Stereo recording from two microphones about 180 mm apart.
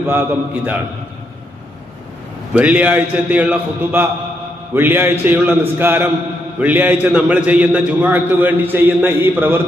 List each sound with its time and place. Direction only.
0.1 s a man's voice: 10° right (ahead or behind)
2.6 s a man's voice: 10° right (ahead or behind)